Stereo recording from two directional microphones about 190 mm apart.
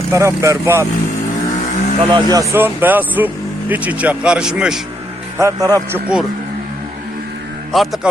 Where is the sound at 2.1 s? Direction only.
20° right (ahead or behind); by 4.8 s 5° right (ahead or behind).